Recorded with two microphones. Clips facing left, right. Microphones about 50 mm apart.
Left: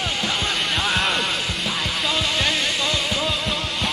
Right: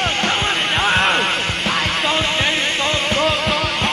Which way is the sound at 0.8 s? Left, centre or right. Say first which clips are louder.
Right 7 dB; right.